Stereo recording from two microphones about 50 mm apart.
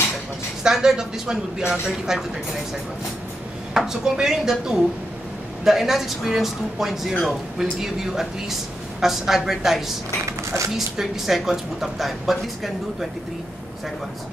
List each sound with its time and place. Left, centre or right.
0.7 s speech: centre
3.7 s speech: centre
10.2 s a sound: right
11.0 s a woman's voice: centre